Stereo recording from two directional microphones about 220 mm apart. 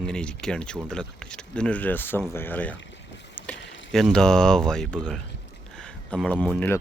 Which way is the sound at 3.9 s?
Centre (ahead or behind).